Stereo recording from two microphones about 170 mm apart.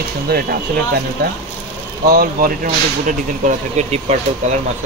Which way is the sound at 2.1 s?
55° right (ahead or behind).